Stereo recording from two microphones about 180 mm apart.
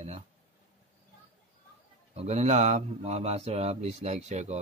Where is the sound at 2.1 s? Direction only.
40° right (ahead or behind).